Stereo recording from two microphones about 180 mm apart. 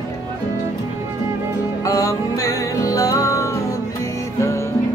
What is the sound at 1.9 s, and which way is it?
Music, 20° left (ahead or behind).